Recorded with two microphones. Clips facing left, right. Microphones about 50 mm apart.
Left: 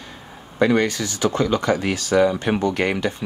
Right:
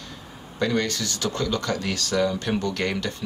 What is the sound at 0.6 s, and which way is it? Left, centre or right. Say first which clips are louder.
Speech: left 6 dB; left.